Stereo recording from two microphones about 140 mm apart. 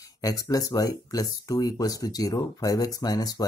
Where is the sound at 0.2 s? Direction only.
25° left (ahead or behind).